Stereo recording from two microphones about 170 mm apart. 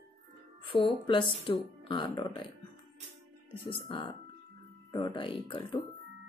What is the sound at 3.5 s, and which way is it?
Speech, 30° left (ahead or behind).